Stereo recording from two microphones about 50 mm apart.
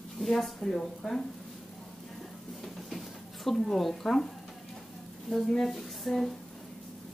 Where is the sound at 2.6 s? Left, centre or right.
Centre.